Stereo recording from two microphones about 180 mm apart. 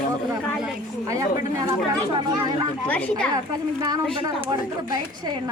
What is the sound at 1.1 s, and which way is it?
Speech, 20° right (ahead or behind).